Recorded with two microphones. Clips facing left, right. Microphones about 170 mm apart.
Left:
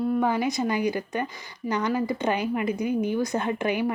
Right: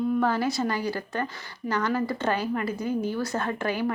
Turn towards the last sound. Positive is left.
turn(degrees=15)  # may be behind; listen again after turning